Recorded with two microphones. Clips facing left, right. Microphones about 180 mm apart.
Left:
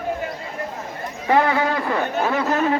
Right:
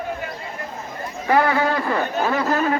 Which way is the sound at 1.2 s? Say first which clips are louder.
Even; 20° left (ahead or behind).